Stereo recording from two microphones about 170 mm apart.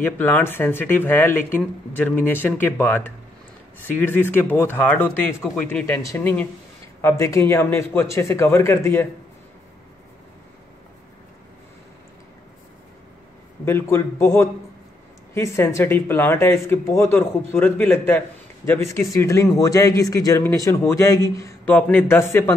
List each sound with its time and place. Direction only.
0.0 s speech: 10° left (ahead or behind)
13.7 s speech: 15° left (ahead or behind)